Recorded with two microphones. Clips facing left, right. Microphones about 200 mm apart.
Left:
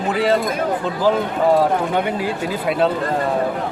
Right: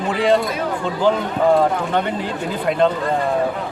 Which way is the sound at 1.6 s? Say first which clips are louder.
Left 1 dB; 10° left (ahead or behind).